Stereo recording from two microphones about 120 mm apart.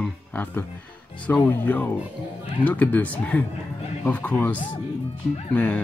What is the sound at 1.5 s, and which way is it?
Speech, 15° left (ahead or behind).